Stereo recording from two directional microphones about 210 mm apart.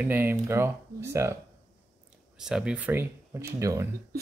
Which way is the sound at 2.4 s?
5° right (ahead or behind).